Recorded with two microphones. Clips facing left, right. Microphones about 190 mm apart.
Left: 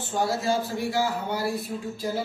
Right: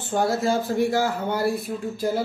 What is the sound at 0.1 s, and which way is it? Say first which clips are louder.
Speech: right 3 dB; 55° right (ahead or behind).